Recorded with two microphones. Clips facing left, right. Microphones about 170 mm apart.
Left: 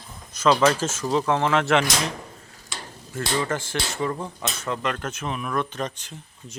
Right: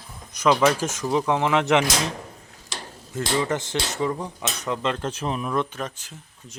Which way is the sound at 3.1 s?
20° right (ahead or behind).